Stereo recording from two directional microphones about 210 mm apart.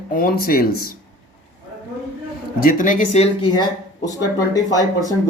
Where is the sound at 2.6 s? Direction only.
40° left (ahead or behind); by 5.1 s 15° left (ahead or behind).